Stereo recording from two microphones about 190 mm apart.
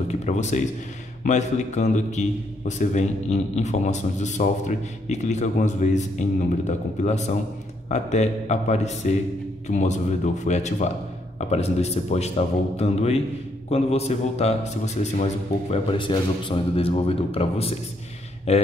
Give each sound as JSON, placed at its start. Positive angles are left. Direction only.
{"t": 0.1, "sound": "a man's voice", "side_deg": 35}